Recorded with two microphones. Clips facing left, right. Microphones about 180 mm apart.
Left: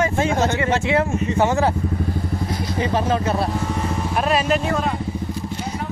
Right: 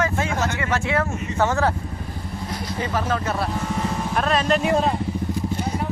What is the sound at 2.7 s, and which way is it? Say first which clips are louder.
Speech: left 4 dB; 20° left (ahead or behind).